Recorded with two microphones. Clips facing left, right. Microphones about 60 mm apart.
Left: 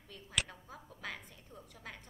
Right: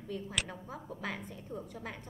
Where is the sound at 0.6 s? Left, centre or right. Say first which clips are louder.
Right 6 dB; centre.